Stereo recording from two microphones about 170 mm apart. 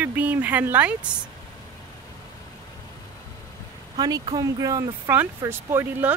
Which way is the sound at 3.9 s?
30° right (ahead or behind).